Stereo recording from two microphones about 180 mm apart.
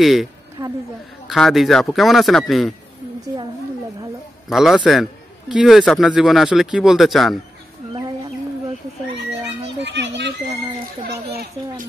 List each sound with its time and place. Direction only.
0.0 s speech: centre (ahead or behind)
0.6 s a sound: 15° right (ahead or behind)
1.3 s speech: centre (ahead or behind)
4.5 s speech: centre (ahead or behind)
9.8 s children playing: 80° right